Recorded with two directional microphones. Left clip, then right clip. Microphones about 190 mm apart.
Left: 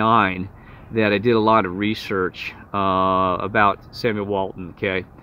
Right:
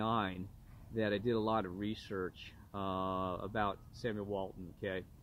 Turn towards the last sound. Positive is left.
turn(degrees=15)  # may be behind; listen again after turning